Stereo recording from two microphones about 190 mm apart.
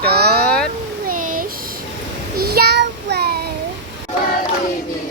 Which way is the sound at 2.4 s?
55° right (ahead or behind).